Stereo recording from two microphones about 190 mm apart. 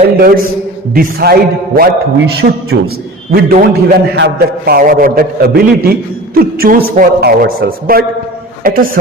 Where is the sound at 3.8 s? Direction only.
60° right (ahead or behind).